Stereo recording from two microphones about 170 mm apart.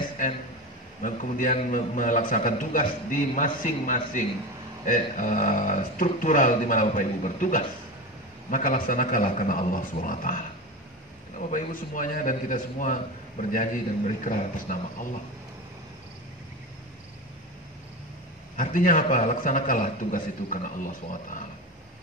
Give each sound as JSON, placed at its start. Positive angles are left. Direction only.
{"t": 1.0, "sound": "a man's voice", "side_deg": 50}
{"t": 18.6, "sound": "a man's voice", "side_deg": 50}